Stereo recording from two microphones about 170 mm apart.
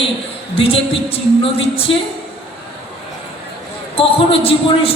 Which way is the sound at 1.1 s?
35° left (ahead or behind).